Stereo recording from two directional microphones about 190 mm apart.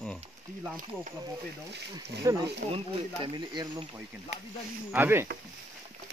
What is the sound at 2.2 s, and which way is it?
Speech, 15° right (ahead or behind).